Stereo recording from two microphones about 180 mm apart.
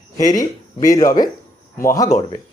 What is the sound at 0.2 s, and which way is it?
Speech, 20° left (ahead or behind).